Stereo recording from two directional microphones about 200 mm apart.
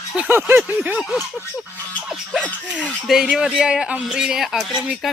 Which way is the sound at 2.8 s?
Centre (ahead or behind).